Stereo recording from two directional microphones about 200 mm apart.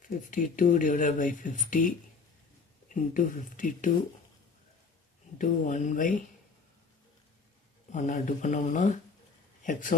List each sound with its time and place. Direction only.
0.1 s speech: 40° left (ahead or behind)
2.9 s speech: 40° left (ahead or behind)
5.4 s speech: 40° left (ahead or behind)
7.9 s speech: 35° left (ahead or behind)